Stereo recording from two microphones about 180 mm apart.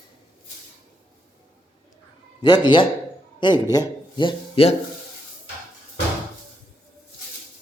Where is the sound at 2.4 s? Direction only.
25° left (ahead or behind).